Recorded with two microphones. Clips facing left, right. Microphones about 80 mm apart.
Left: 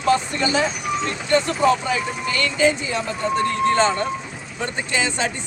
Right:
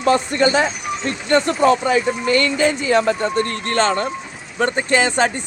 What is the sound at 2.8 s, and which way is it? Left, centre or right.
Speech, right.